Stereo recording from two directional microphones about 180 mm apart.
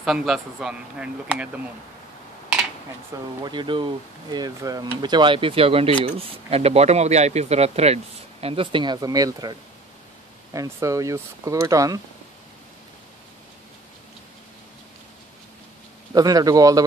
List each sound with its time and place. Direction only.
0.0 s speech: centre (ahead or behind)
3.1 s speech: 15° right (ahead or behind)
16.1 s speech: 20° right (ahead or behind)